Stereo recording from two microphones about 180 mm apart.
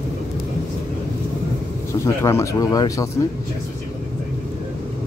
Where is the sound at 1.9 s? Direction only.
15° left (ahead or behind).